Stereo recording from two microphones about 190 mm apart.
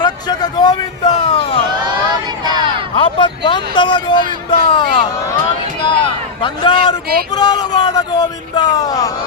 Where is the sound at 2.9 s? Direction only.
25° left (ahead or behind).